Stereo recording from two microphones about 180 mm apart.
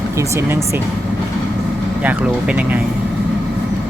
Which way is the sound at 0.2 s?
15° right (ahead or behind).